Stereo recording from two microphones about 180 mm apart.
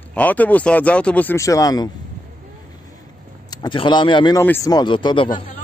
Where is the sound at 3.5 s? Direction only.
25° left (ahead or behind).